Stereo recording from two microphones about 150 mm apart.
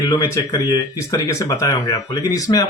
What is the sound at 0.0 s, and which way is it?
Speech, 25° left (ahead or behind).